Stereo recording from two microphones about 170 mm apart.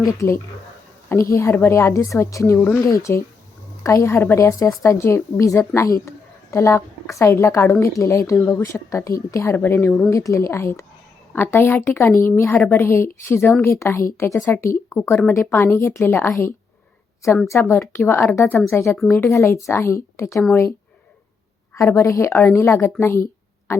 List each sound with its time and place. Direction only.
0.2 s a woman's voice: 15° left (ahead or behind)
17.5 s a woman's voice: 15° left (ahead or behind)
18.9 s speech: 5° left (ahead or behind)
19.2 s a woman's voice: 15° left (ahead or behind)
21.8 s a woman's voice: 15° left (ahead or behind)